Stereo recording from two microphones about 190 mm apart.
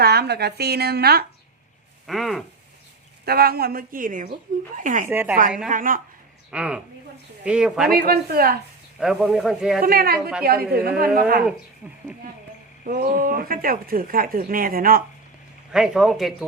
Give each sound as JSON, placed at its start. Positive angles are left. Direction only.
{"t": 0.0, "sound": "speech", "side_deg": -55}
{"t": 2.0, "sound": "speech", "side_deg": 0}
{"t": 3.2, "sound": "speech", "side_deg": -55}
{"t": 5.0, "sound": "a woman's voice", "side_deg": -10}
{"t": 5.6, "sound": "speech", "side_deg": -45}
{"t": 6.5, "sound": "speech", "side_deg": -5}
{"t": 7.9, "sound": "speech", "side_deg": -55}
{"t": 9.0, "sound": "speech", "side_deg": -5}
{"t": 9.8, "sound": "speech", "side_deg": -50}
{"t": 10.2, "sound": "speech", "side_deg": -5}
{"t": 10.4, "sound": "speech", "side_deg": -55}
{"t": 12.8, "sound": "speech", "side_deg": -50}
{"t": 15.7, "sound": "speech", "side_deg": -5}